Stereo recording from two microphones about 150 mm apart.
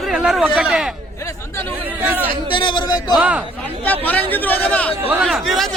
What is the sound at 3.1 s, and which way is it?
Speech, 10° right (ahead or behind).